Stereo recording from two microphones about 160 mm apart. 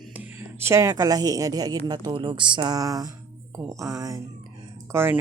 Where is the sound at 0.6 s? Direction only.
20° right (ahead or behind).